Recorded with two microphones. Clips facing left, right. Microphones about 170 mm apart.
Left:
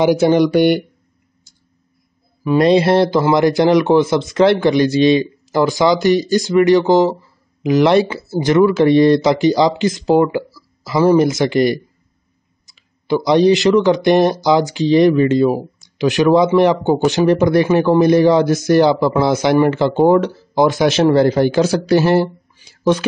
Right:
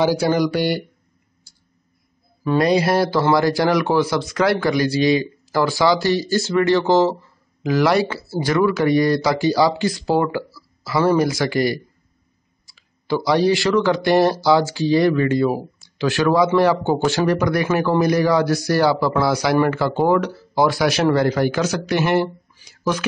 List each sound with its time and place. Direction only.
0.0 s speech: 20° left (ahead or behind)
2.4 s speech: 25° left (ahead or behind)